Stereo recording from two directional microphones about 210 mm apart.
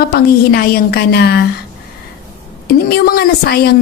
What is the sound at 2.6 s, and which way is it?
Speech, 45° left (ahead or behind).